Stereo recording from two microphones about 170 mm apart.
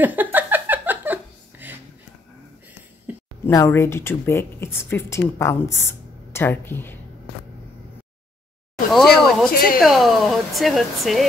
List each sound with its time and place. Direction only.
0.0 s a sound: 10° right (ahead or behind)
3.1 s a sound: 10° right (ahead or behind)
3.4 s a woman's voice: 15° left (ahead or behind)
8.9 s speech: centre (ahead or behind)
9.5 s speech: 55° left (ahead or behind)
9.8 s speech: centre (ahead or behind)